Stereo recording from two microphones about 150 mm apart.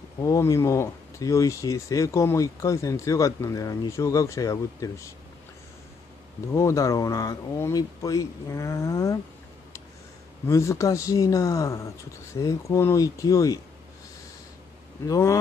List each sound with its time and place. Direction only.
0.2 s speech: 20° left (ahead or behind)
6.5 s speech: 20° left (ahead or behind)
10.4 s speech: 20° left (ahead or behind)
15.0 s speech: 20° left (ahead or behind)